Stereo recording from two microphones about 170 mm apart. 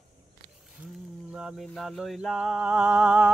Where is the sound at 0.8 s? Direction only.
5° right (ahead or behind).